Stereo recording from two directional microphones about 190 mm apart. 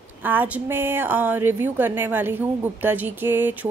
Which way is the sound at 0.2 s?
10° right (ahead or behind).